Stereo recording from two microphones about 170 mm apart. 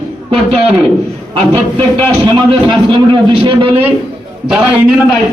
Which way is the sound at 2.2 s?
30° right (ahead or behind).